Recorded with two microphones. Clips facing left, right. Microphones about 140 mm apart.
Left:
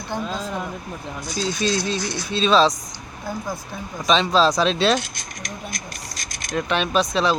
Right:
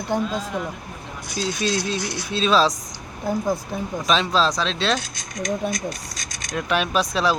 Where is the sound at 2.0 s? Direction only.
65° right (ahead or behind).